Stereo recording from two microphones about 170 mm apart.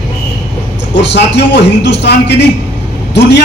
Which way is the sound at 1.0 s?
90° left.